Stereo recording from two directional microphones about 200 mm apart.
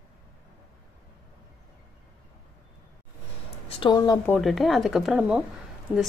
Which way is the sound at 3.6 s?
25° left (ahead or behind).